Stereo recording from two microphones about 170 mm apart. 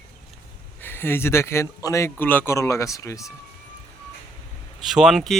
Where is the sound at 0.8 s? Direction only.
15° left (ahead or behind).